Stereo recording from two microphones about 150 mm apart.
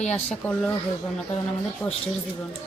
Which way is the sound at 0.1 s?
5° left (ahead or behind).